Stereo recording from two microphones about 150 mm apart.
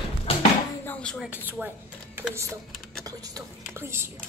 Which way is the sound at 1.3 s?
10° right (ahead or behind).